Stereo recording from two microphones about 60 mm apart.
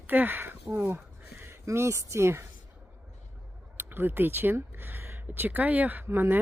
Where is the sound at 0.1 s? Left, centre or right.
Right.